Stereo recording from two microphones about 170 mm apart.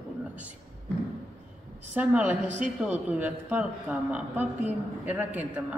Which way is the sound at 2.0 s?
5° right (ahead or behind).